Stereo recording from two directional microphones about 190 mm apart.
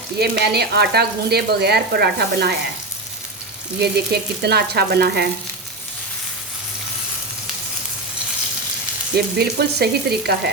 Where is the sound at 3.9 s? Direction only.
60° right (ahead or behind).